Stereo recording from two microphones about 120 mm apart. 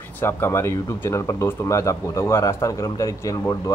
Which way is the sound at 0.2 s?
20° left (ahead or behind).